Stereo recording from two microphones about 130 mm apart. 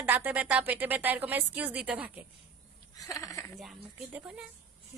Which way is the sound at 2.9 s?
25° left (ahead or behind).